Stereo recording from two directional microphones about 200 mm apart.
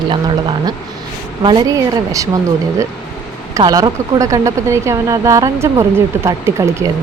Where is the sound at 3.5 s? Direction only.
20° right (ahead or behind).